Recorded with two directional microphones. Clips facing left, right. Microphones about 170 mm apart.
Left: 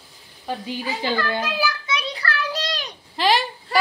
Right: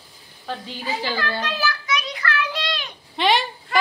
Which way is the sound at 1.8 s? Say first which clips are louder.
Right 1 dB; 30° left (ahead or behind).